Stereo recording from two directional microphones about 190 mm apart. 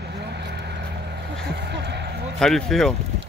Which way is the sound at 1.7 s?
65° right (ahead or behind).